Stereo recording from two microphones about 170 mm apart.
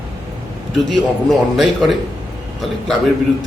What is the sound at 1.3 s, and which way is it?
Speech, centre (ahead or behind).